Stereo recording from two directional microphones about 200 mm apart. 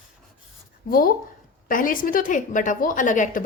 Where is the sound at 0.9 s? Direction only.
45° left (ahead or behind).